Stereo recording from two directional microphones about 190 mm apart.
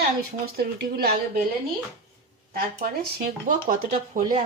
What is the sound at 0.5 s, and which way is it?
Speech, 50° right (ahead or behind).